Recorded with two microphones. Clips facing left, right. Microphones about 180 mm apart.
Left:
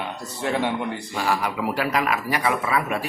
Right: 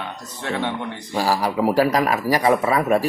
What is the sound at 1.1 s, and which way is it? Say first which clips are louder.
Speech: right 5 dB; 35° right (ahead or behind).